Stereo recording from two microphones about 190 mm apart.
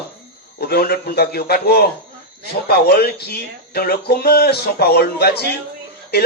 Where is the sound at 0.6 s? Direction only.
55° left (ahead or behind).